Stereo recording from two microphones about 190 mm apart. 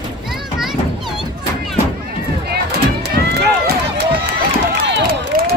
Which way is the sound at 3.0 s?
55° right (ahead or behind).